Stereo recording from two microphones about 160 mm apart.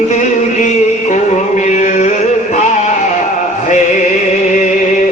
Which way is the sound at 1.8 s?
50° left (ahead or behind).